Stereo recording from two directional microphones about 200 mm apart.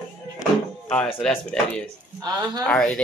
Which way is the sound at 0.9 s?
5° left (ahead or behind).